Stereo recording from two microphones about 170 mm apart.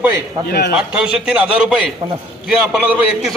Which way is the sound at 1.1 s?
5° right (ahead or behind).